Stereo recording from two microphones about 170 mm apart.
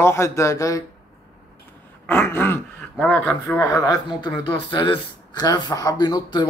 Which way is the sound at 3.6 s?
20° left (ahead or behind).